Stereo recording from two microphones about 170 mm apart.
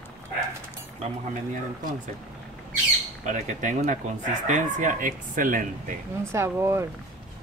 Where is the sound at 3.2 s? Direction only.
45° right (ahead or behind).